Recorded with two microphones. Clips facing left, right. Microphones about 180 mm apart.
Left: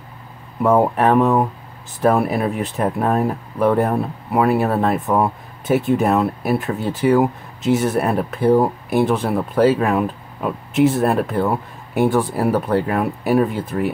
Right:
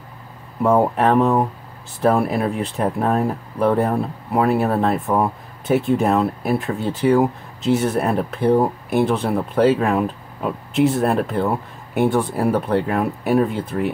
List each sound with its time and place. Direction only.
0.6 s speech: 5° left (ahead or behind)